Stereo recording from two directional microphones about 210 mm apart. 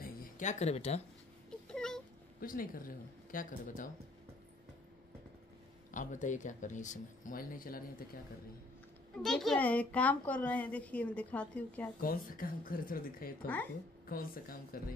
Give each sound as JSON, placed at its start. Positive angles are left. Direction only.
{"t": 0.0, "sound": "a sound", "side_deg": 35}
{"t": 1.7, "sound": "cat", "side_deg": 5}
{"t": 2.4, "sound": "speech", "side_deg": 40}
{"t": 5.9, "sound": "speech", "side_deg": 35}
{"t": 9.1, "sound": "a child's voice", "side_deg": 0}
{"t": 12.0, "sound": "speech", "side_deg": 40}